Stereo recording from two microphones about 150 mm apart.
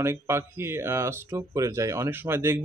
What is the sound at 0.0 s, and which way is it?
Speech, 15° right (ahead or behind).